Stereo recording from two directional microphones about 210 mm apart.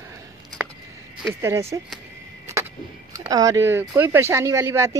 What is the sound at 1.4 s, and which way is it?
Speech, 15° right (ahead or behind).